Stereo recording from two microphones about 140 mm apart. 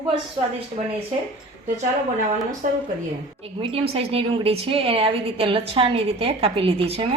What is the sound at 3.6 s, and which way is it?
A woman's voice, 45° right (ahead or behind).